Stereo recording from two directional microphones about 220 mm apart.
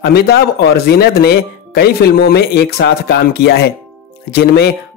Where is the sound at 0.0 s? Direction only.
45° left (ahead or behind).